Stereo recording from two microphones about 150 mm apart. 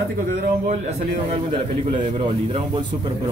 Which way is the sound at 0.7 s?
45° right (ahead or behind).